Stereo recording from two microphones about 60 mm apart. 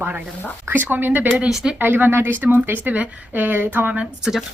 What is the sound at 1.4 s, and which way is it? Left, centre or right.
Speech, centre.